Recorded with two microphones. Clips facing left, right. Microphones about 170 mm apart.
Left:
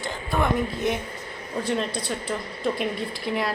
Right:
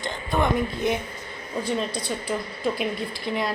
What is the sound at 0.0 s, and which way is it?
A woman's voice, centre (ahead or behind).